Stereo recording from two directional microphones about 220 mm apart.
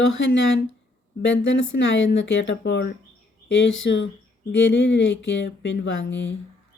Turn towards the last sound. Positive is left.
turn(degrees=55)  # may be behind; listen again after turning